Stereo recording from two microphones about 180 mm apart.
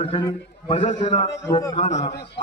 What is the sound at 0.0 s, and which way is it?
A man's voice, 30° left (ahead or behind).